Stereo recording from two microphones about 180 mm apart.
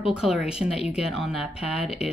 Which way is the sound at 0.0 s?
5° right (ahead or behind).